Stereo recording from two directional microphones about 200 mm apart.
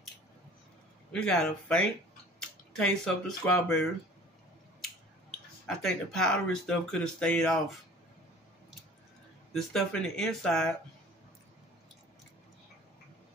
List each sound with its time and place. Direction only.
1.1 s speech: 5° left (ahead or behind)
5.7 s speech: 5° left (ahead or behind)
9.5 s speech: centre (ahead or behind)